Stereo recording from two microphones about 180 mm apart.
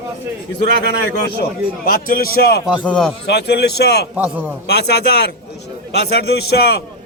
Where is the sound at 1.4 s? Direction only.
55° left (ahead or behind).